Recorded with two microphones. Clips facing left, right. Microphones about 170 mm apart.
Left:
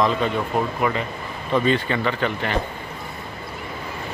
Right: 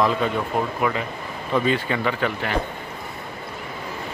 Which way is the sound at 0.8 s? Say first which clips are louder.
Left 1 dB; centre (ahead or behind).